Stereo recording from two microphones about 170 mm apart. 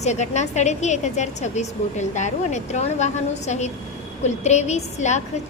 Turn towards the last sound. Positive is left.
turn(degrees=45)  # may be behind; listen again after turning